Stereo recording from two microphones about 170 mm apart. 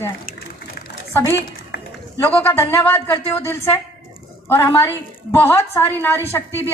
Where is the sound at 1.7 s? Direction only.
90° left.